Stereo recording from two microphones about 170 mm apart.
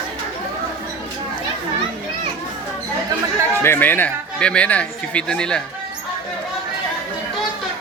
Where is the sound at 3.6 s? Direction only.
15° left (ahead or behind).